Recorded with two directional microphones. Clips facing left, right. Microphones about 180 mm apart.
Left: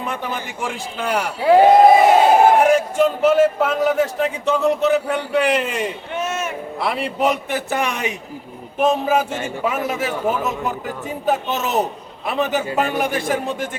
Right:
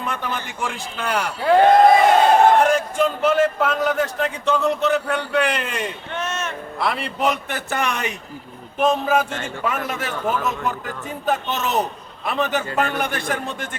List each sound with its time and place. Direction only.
0.0 s a man's voice: 5° left (ahead or behind)